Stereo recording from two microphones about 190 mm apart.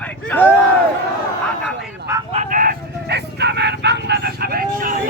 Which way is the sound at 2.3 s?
40° right (ahead or behind).